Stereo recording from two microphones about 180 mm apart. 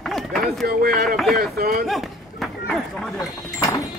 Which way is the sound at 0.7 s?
55° right (ahead or behind).